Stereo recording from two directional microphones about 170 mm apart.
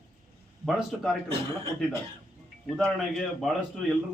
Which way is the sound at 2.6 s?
Centre (ahead or behind).